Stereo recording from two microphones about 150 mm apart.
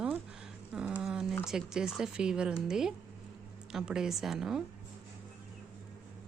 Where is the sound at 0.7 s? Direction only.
5° right (ahead or behind).